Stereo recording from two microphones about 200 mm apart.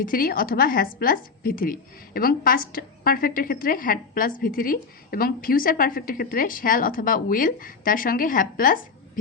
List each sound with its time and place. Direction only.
0.0 s a woman's voice: 45° left (ahead or behind)